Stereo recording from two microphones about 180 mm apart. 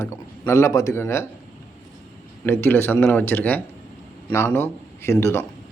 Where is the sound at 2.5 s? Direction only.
10° left (ahead or behind).